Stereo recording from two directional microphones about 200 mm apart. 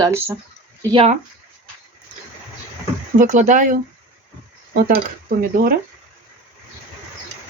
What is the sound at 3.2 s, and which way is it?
Speech, 40° right (ahead or behind).